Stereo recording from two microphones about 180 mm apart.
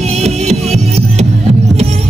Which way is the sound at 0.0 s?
35° right (ahead or behind).